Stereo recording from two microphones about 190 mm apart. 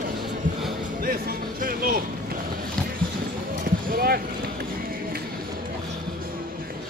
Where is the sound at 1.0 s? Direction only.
50° right (ahead or behind).